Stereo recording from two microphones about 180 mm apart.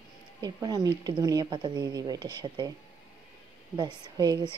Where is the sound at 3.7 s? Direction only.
20° right (ahead or behind).